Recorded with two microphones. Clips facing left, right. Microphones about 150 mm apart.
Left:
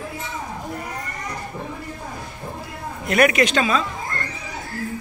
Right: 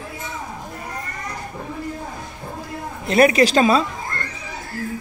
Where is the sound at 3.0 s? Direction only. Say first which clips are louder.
Right 3 dB; 30° right (ahead or behind).